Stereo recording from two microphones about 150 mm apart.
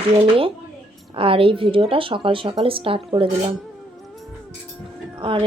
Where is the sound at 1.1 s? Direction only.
35° right (ahead or behind).